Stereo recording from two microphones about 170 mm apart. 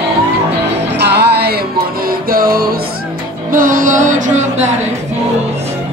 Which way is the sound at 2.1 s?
60° right (ahead or behind).